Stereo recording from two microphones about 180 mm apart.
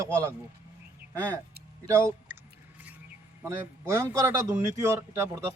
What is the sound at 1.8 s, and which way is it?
Speech, 15° right (ahead or behind).